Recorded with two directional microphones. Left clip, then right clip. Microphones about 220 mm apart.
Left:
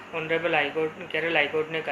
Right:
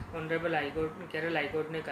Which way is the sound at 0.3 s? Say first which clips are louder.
Left 7 dB; 20° right (ahead or behind).